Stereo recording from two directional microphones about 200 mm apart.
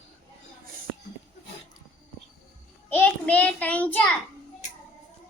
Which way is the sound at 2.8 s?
10° left (ahead or behind).